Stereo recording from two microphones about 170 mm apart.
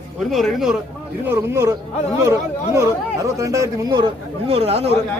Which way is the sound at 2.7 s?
20° right (ahead or behind).